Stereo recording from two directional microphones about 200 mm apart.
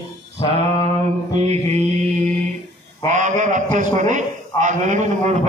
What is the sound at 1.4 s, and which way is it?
Mantra, 30° right (ahead or behind).